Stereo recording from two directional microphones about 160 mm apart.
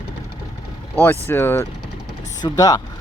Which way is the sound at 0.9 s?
15° left (ahead or behind).